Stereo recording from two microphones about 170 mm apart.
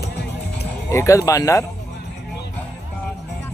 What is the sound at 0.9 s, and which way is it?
Speech, 15° left (ahead or behind).